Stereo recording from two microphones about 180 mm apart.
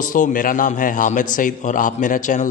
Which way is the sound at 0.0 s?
45° left (ahead or behind).